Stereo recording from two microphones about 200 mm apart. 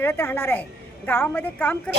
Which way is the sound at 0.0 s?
10° left (ahead or behind).